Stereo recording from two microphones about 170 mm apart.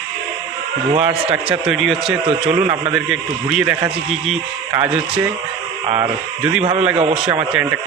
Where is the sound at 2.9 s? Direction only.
5° right (ahead or behind).